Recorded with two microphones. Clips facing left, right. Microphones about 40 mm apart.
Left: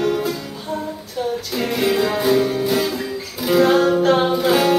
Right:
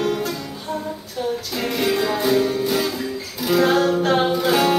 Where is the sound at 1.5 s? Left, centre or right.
Centre.